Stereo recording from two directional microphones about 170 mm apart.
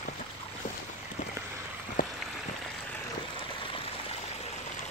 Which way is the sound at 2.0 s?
55° left (ahead or behind).